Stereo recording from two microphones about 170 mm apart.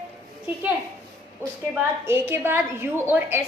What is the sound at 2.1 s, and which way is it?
A woman's voice, 15° right (ahead or behind).